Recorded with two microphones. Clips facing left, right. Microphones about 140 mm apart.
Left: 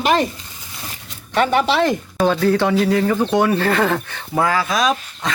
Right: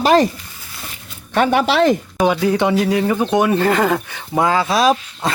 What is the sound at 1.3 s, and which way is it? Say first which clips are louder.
Speech: right 1 dB; 55° right (ahead or behind).